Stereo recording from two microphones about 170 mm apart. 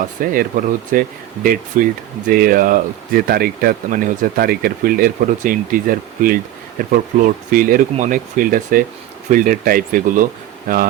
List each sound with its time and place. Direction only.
0.0 s speech: 55° right (ahead or behind)